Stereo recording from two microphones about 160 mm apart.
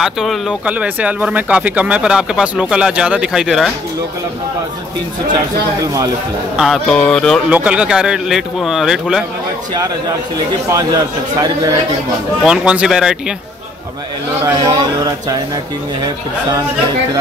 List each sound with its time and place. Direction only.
0.0 s speech: centre (ahead or behind)
6.5 s a man's voice: centre (ahead or behind)
7.4 s a man's voice: 10° right (ahead or behind)
10.7 s a man's voice: 25° right (ahead or behind)
12.4 s a man's voice: 5° right (ahead or behind)
14.4 s a man's voice: 25° right (ahead or behind)